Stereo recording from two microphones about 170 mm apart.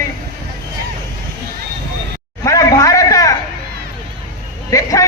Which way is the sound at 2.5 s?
20° left (ahead or behind).